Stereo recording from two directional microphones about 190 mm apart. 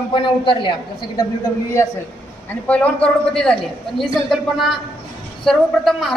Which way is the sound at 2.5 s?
10° left (ahead or behind).